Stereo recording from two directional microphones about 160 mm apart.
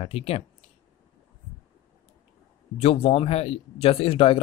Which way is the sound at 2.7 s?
35° left (ahead or behind).